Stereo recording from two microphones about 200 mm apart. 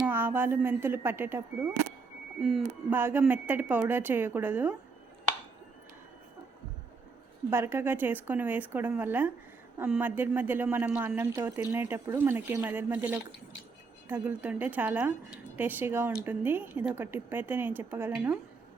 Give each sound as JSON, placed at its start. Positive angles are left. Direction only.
{"t": 0.0, "sound": "speech", "side_deg": -10}
{"t": 2.4, "sound": "speech", "side_deg": 0}
{"t": 2.9, "sound": "speech", "side_deg": -10}
{"t": 7.5, "sound": "speech", "side_deg": -10}